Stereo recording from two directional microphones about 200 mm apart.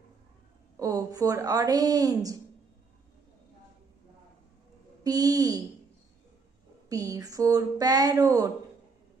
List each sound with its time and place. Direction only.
0.7 s speech: 15° right (ahead or behind)
5.0 s speech: 20° right (ahead or behind)
6.9 s speech: 15° right (ahead or behind)